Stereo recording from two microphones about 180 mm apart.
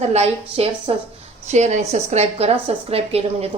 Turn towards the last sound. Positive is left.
turn(degrees=-35)  # may be behind; listen again after turning